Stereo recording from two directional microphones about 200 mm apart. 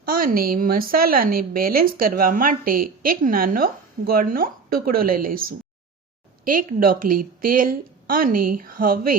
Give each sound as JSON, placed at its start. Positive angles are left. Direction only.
{"t": 0.0, "sound": "a woman's voice", "side_deg": -45}